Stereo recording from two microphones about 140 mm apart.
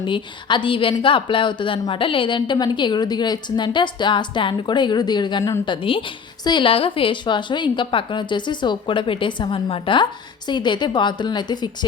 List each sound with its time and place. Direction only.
0.0 s a woman's voice: 35° left (ahead or behind)
5.6 s a woman's voice: 35° left (ahead or behind)